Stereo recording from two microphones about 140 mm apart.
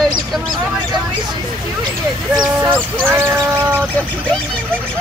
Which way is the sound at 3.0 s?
15° right (ahead or behind).